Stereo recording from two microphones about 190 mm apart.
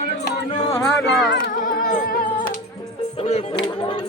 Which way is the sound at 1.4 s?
50° left (ahead or behind).